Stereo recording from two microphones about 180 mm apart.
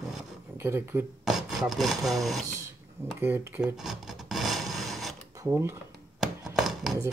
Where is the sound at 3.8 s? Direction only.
Centre (ahead or behind).